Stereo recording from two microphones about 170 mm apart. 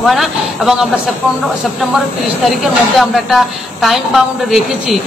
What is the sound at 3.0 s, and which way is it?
A woman's voice, centre (ahead or behind).